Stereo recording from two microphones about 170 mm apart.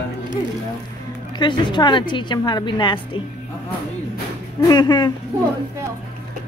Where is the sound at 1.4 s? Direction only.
25° left (ahead or behind).